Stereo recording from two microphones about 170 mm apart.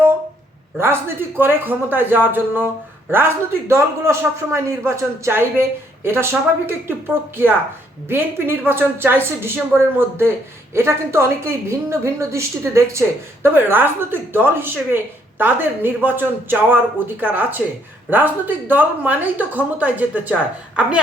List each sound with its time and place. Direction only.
0.8 s a woman's voice: 15° right (ahead or behind)